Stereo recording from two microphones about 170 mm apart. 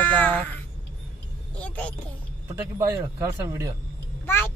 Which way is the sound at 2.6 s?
20° right (ahead or behind).